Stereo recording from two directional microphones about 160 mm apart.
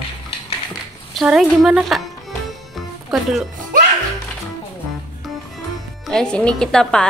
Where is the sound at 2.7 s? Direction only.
Centre (ahead or behind).